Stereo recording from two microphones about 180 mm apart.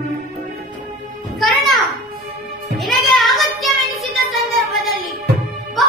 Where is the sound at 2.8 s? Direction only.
Centre (ahead or behind).